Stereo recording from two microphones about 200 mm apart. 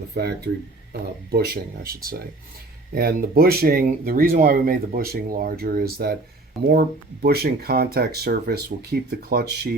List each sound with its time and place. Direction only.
0.1 s speech: 55° right (ahead or behind)
1.8 s speech: 50° right (ahead or behind)